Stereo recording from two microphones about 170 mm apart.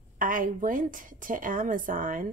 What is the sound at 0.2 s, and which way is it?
A woman's voice, 55° right (ahead or behind).